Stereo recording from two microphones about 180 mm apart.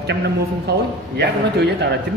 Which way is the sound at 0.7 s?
70° right (ahead or behind).